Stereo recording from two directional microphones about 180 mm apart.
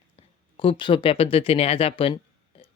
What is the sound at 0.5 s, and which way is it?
Speech, 30° left (ahead or behind).